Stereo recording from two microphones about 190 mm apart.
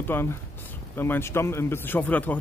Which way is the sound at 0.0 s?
10° left (ahead or behind).